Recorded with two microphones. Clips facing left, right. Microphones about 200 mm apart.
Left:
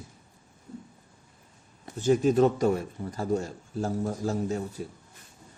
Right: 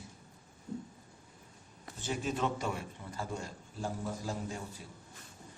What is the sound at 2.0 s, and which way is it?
A man's voice, 45° left (ahead or behind).